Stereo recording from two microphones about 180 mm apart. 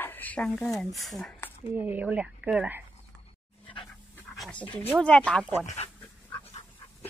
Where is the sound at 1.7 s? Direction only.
10° right (ahead or behind).